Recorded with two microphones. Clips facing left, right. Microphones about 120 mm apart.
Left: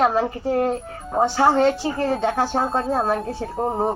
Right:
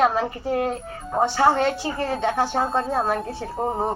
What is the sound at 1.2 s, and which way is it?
A woman's voice, 5° left (ahead or behind).